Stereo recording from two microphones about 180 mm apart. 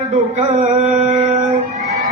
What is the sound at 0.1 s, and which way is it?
Mantra, 40° right (ahead or behind).